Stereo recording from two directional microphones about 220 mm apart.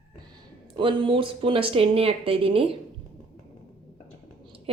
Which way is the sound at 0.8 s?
25° right (ahead or behind).